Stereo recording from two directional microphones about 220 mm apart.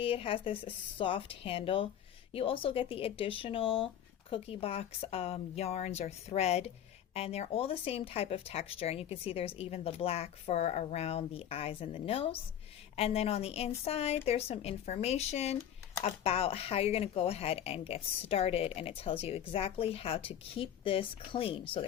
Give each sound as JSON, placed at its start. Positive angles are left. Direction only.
{"t": 0.0, "sound": "speech", "side_deg": 25}